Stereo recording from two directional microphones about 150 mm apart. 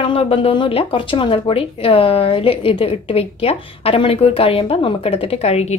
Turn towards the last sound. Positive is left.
turn(degrees=45)  # may be behind; listen again after turning